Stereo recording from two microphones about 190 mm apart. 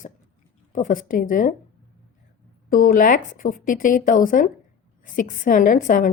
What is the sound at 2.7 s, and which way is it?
Speech, 45° left (ahead or behind).